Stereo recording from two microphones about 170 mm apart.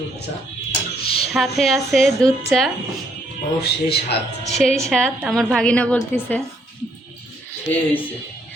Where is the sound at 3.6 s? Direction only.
70° left (ahead or behind).